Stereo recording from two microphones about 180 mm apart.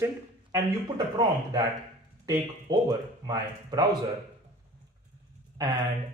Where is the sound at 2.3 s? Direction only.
20° right (ahead or behind).